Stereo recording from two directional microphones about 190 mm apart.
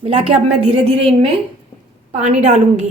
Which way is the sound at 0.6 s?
30° right (ahead or behind).